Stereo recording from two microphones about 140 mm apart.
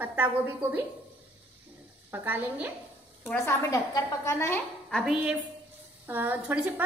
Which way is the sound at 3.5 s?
20° left (ahead or behind).